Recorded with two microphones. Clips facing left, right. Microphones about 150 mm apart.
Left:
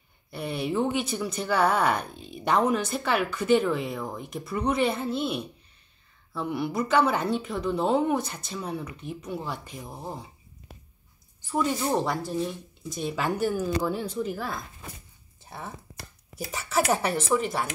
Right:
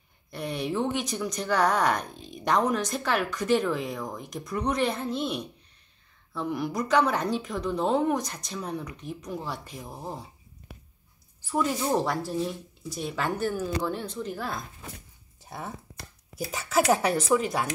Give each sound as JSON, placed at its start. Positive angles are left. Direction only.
{"t": 0.3, "sound": "speech", "side_deg": 5}
{"t": 11.4, "sound": "speech", "side_deg": 0}
{"t": 13.1, "sound": "speech", "side_deg": 10}
{"t": 16.9, "sound": "speech", "side_deg": 0}